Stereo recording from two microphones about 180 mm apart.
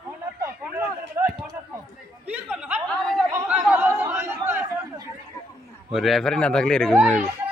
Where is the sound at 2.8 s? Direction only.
5° left (ahead or behind).